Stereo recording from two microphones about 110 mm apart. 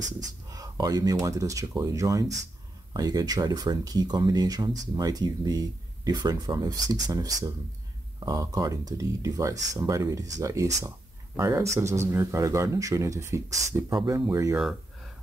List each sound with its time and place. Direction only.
0.0 s speech: 35° right (ahead or behind)
13.9 s speech: 40° right (ahead or behind)
14.3 s speech: 25° right (ahead or behind)